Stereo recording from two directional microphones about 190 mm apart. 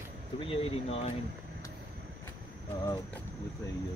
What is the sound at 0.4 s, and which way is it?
Speech, 30° left (ahead or behind).